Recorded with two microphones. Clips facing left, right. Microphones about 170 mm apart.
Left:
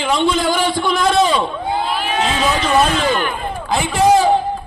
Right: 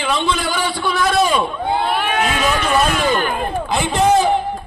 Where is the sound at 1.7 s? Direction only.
60° right (ahead or behind).